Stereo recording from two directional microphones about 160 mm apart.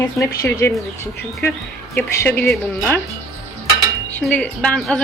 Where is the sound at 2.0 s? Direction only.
10° left (ahead or behind).